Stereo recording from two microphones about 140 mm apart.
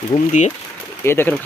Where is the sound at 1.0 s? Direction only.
15° left (ahead or behind).